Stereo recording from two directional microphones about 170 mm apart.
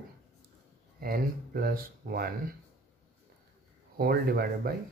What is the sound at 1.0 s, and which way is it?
Speech, 60° right (ahead or behind).